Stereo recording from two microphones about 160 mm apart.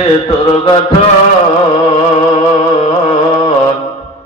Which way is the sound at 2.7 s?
35° left (ahead or behind).